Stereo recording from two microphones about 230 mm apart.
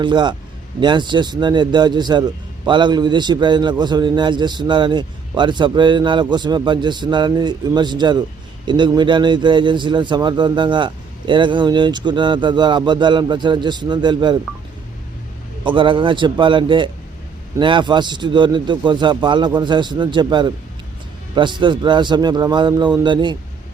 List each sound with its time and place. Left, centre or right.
0.0 s a man's voice: centre
15.6 s a man's voice: right